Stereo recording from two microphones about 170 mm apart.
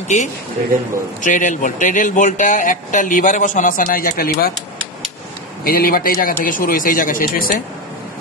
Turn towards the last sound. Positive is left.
turn(degrees=55)  # may be behind; listen again after turning